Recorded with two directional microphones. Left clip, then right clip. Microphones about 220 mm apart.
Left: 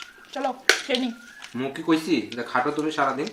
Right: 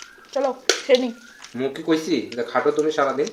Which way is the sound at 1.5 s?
30° left (ahead or behind).